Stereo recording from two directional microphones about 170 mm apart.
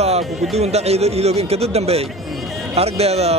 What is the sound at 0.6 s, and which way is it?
A man's voice, 40° right (ahead or behind).